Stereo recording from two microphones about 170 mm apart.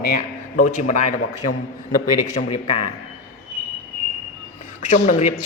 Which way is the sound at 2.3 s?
40° left (ahead or behind).